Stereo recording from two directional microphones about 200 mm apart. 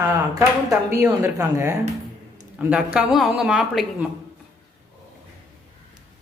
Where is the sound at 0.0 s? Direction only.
15° right (ahead or behind).